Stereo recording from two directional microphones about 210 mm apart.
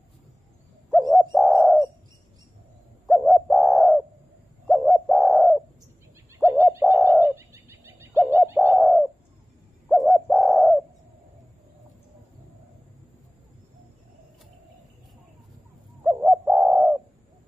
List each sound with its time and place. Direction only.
0.8 s bird: centre (ahead or behind)
3.1 s bird: centre (ahead or behind)
6.3 s bird: 10° right (ahead or behind)
16.0 s bird: 10° right (ahead or behind)